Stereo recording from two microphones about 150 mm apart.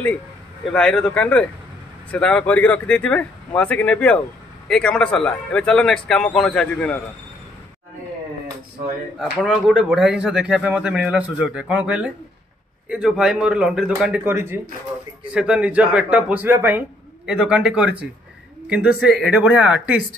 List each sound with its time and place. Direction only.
0.7 s speech: 5° left (ahead or behind)
9.2 s speech: centre (ahead or behind)
14.2 s a man's voice: 15° right (ahead or behind)